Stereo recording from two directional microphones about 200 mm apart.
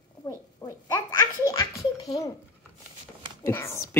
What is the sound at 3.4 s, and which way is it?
Speech, 15° left (ahead or behind).